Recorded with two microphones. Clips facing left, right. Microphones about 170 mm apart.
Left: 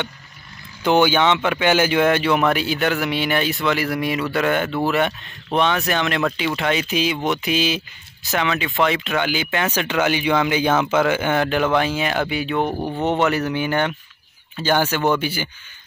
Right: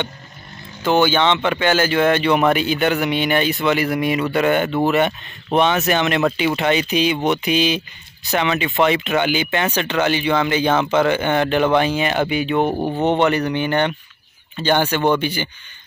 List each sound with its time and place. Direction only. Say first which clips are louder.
0.8 s a man's voice: even; 15° left (ahead or behind); by 12.7 s centre (ahead or behind)
12.7 s speech: right 3 dB; 15° right (ahead or behind)
13.0 s a man's voice: right 2 dB; centre (ahead or behind)